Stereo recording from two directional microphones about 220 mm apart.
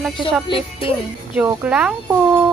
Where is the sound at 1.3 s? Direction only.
5° right (ahead or behind).